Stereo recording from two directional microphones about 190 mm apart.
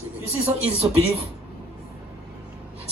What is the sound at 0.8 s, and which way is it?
Speech, 20° right (ahead or behind).